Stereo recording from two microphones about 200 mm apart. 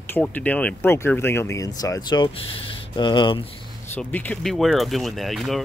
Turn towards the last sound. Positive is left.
turn(degrees=0)  # may be behind; listen again after turning